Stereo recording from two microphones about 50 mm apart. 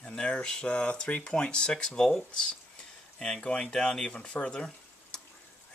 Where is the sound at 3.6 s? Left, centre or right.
Centre.